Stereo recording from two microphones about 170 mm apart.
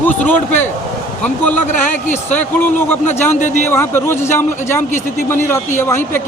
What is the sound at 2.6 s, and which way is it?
A man's voice, 10° left (ahead or behind).